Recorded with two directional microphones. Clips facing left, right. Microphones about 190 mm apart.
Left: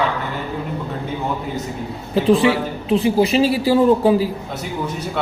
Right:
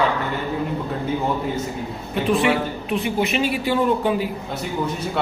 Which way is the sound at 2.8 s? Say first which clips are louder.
Left 8 dB; 30° left (ahead or behind).